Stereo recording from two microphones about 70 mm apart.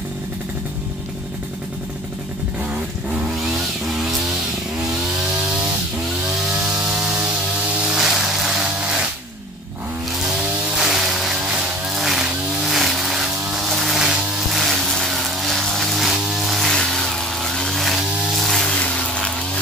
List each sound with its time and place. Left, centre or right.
6.9 s a sound: centre
7.8 s music: centre
10.2 s vehicle: centre
16.1 s a sound: centre
18.4 s music: centre
18.7 s music: centre